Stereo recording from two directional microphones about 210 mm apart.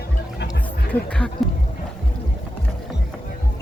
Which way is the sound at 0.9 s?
5° left (ahead or behind).